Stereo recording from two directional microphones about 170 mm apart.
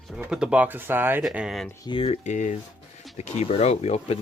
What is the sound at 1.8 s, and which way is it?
Speech, 30° left (ahead or behind).